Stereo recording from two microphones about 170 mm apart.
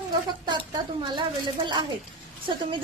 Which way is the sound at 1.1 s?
30° right (ahead or behind).